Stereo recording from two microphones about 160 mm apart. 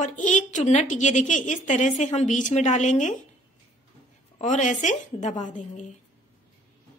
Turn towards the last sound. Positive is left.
turn(degrees=50)  # may be behind; listen again after turning